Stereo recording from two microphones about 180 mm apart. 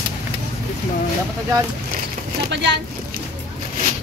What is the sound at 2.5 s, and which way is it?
Speech, 75° right (ahead or behind).